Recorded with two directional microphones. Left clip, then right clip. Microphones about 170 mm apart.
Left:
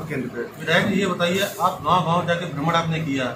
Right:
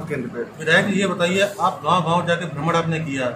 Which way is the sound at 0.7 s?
90° right.